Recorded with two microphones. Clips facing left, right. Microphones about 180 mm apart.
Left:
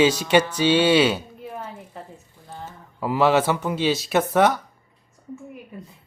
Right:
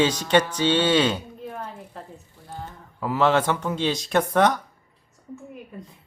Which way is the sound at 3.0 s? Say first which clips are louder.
Left 2 dB; 10° left (ahead or behind).